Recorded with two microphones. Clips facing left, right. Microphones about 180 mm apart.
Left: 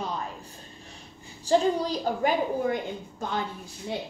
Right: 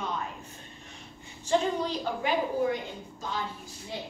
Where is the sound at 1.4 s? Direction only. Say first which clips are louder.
Left 4 dB; 35° left (ahead or behind).